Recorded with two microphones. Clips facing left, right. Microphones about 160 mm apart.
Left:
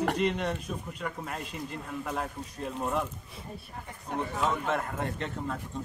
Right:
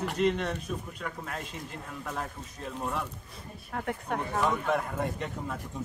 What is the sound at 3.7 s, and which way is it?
Speech, 70° right (ahead or behind).